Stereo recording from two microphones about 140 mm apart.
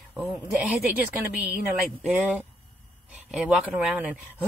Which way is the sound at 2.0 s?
10° right (ahead or behind).